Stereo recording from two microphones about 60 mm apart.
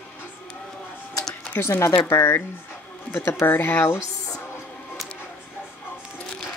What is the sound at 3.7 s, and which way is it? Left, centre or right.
Speech, left.